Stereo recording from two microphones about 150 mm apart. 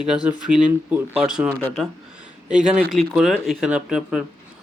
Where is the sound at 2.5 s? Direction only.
5° right (ahead or behind).